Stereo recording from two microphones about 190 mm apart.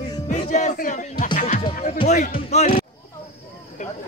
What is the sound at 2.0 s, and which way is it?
Speech, 40° left (ahead or behind).